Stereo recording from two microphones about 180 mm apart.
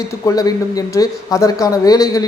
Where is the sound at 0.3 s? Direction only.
20° left (ahead or behind).